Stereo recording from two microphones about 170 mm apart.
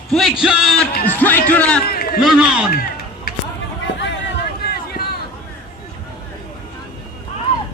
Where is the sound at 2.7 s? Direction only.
60° left (ahead or behind).